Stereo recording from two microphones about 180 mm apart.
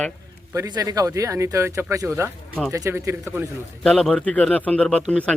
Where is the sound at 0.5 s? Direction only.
20° right (ahead or behind).